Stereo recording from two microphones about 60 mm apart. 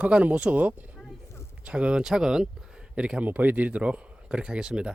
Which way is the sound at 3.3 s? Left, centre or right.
Right.